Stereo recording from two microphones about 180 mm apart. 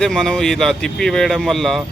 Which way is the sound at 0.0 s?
5° left (ahead or behind).